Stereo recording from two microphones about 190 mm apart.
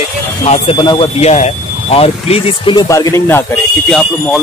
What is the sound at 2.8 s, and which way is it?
Speech, 15° left (ahead or behind).